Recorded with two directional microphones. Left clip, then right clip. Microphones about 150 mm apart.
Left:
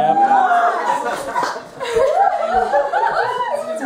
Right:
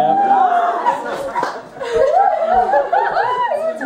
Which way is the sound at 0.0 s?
5° left (ahead or behind).